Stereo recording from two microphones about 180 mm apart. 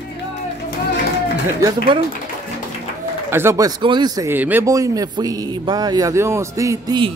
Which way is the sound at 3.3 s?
15° right (ahead or behind).